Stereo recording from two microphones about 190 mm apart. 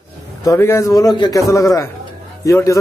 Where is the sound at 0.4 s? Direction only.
15° left (ahead or behind).